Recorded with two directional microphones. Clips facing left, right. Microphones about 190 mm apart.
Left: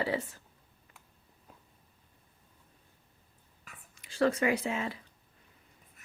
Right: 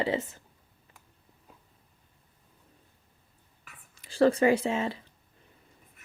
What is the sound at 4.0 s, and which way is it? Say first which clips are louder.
Speech: right 5 dB; 35° right (ahead or behind).